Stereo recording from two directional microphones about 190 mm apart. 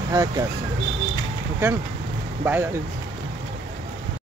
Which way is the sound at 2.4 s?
10° right (ahead or behind).